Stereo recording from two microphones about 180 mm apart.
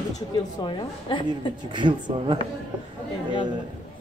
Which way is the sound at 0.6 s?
30° left (ahead or behind).